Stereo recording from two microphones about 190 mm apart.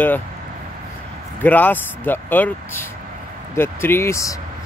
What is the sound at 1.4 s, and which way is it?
Speech, 10° left (ahead or behind).